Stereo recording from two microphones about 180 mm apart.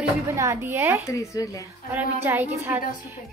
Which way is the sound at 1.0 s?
15° left (ahead or behind).